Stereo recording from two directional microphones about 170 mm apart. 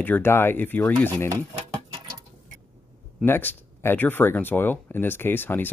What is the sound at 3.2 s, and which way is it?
Speech, 15° left (ahead or behind).